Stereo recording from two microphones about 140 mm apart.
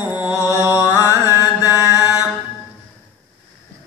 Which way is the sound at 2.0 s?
25° left (ahead or behind).